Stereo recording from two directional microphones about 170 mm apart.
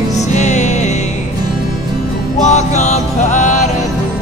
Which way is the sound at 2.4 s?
45° left (ahead or behind).